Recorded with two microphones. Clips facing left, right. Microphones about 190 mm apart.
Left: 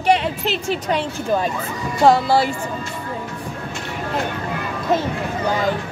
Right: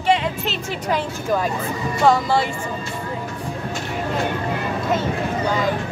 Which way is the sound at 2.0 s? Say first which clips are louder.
Left 3 dB; 35° left (ahead or behind).